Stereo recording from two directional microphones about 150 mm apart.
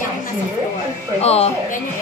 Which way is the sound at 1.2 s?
45° left (ahead or behind).